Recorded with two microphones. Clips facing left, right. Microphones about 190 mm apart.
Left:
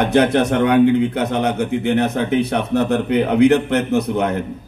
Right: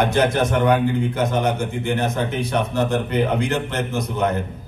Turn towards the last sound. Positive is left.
turn(degrees=60)  # may be behind; listen again after turning